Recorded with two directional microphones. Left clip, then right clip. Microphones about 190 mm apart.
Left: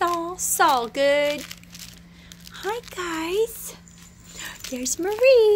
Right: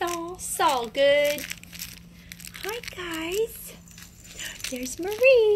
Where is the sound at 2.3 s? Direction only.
5° left (ahead or behind).